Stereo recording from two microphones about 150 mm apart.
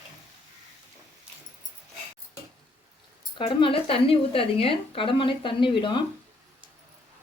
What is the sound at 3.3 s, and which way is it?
A woman's voice, 35° left (ahead or behind).